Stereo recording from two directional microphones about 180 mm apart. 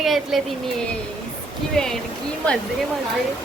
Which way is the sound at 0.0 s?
Centre (ahead or behind).